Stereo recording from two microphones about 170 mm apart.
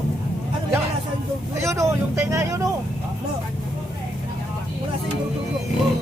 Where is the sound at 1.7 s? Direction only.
15° right (ahead or behind).